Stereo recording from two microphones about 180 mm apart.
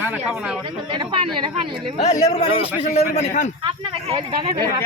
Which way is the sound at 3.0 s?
40° left (ahead or behind).